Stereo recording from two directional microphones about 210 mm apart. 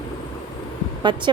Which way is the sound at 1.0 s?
20° right (ahead or behind).